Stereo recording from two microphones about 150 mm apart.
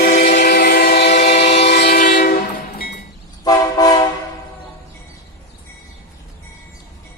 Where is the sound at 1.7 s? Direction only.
85° left.